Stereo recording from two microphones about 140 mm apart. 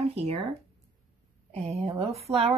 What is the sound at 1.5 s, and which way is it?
Speech, 45° right (ahead or behind).